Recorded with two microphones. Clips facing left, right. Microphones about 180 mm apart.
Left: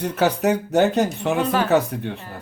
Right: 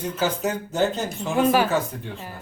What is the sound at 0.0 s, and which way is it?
Speech, 65° left (ahead or behind).